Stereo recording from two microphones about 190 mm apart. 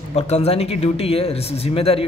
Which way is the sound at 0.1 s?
35° left (ahead or behind).